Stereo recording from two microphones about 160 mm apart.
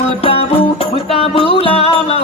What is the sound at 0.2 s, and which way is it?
Music, 35° left (ahead or behind).